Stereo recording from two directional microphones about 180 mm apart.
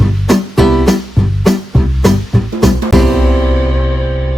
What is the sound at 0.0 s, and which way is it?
Music, centre (ahead or behind).